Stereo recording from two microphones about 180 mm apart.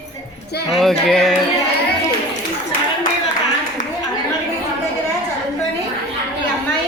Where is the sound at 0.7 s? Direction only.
Centre (ahead or behind).